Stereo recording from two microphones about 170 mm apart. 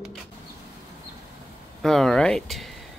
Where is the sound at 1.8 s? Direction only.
5° left (ahead or behind).